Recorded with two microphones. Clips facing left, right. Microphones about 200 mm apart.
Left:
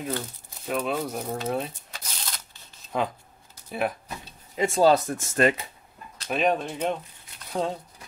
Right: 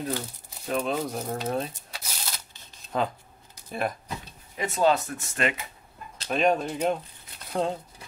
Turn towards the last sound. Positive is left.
turn(degrees=0)  # may be behind; listen again after turning